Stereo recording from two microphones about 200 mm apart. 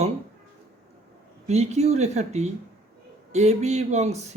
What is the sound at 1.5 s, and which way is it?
Speech, 35° right (ahead or behind).